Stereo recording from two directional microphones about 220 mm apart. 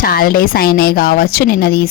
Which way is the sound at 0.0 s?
40° left (ahead or behind).